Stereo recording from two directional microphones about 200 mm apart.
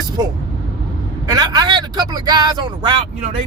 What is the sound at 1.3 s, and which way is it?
Speech, 20° right (ahead or behind).